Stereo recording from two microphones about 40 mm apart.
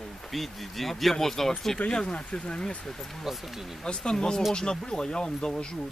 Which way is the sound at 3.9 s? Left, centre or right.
Centre.